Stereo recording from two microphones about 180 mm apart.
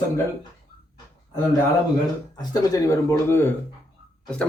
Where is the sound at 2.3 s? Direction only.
20° left (ahead or behind).